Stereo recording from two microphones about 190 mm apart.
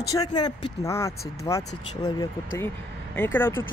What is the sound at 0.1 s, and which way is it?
Speech, 20° left (ahead or behind).